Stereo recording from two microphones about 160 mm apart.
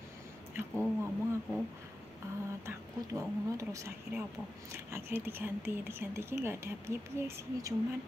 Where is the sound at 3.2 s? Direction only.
20° right (ahead or behind).